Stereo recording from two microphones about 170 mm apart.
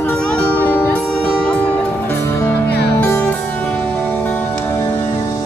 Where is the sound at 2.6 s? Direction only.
75° left (ahead or behind).